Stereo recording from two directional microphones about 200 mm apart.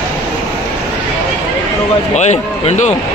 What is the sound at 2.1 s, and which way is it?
Speech, 35° left (ahead or behind).